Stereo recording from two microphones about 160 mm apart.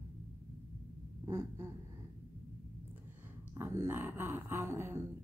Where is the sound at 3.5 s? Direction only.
15° right (ahead or behind).